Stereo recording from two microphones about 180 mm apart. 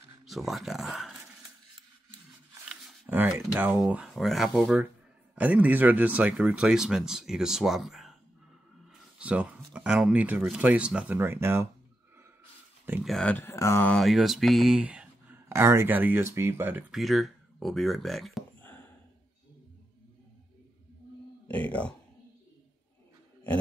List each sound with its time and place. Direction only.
0.3 s speech: centre (ahead or behind)
2.7 s a sound: 5° right (ahead or behind)
3.5 s speech: 10° right (ahead or behind)
9.2 s speech: 5° right (ahead or behind)
13.0 s speech: 5° left (ahead or behind); by 16.8 s 10° right (ahead or behind)
16.9 s speech: centre (ahead or behind)
21.5 s speech: 10° left (ahead or behind)